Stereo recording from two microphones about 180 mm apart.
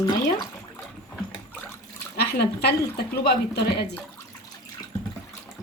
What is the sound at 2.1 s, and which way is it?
A woman's voice, 65° left (ahead or behind).